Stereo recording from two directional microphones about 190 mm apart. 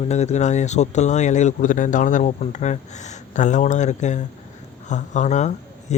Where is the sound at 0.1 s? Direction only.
35° left (ahead or behind).